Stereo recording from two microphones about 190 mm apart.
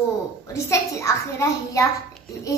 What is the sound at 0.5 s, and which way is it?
A child's voice, 15° left (ahead or behind).